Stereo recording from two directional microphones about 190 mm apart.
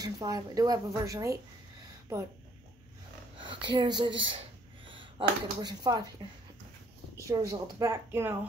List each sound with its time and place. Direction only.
0.0 s speech: 20° right (ahead or behind)
3.3 s speech: 25° right (ahead or behind)
7.2 s a woman's voice: 15° right (ahead or behind)